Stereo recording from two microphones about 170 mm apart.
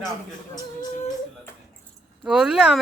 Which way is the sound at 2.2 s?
5° right (ahead or behind).